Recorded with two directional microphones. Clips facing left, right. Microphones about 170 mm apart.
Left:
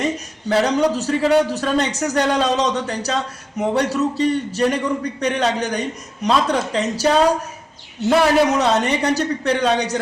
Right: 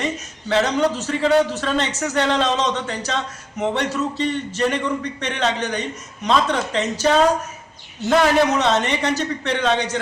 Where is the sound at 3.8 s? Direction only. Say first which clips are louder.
Left 4 dB; 35° left (ahead or behind).